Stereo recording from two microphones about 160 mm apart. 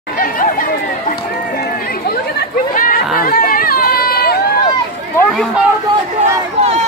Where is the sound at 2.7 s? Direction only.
60° left (ahead or behind).